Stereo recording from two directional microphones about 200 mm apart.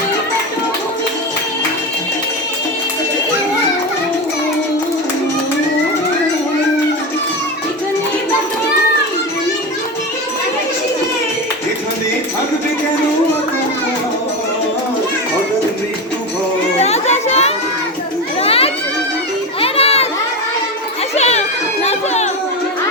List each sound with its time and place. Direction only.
16.7 s children playing: 35° left (ahead or behind)
21.2 s crowd: 35° left (ahead or behind)
21.8 s chatter: 35° left (ahead or behind)